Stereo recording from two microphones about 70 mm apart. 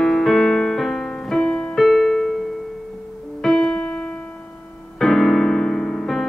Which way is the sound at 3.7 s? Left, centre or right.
Centre.